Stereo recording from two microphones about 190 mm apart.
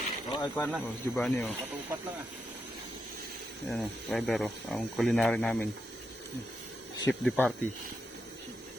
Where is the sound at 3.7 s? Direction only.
Centre (ahead or behind).